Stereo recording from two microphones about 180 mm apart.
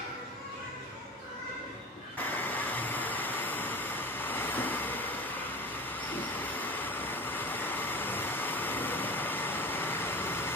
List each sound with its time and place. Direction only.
2.1 s vehicle: 10° left (ahead or behind)